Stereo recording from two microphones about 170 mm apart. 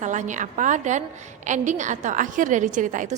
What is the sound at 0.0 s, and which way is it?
A woman's voice, 45° right (ahead or behind).